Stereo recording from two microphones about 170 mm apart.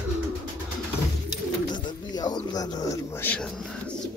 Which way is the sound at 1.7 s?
25° left (ahead or behind).